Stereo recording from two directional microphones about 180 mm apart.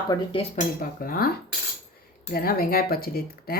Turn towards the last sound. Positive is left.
turn(degrees=55)  # may be behind; listen again after turning